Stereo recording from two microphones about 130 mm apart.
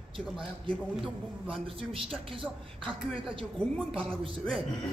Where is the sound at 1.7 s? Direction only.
45° right (ahead or behind).